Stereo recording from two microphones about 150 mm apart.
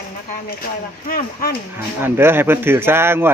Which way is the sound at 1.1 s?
75° left (ahead or behind).